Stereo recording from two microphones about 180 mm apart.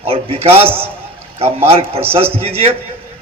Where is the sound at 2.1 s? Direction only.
35° right (ahead or behind).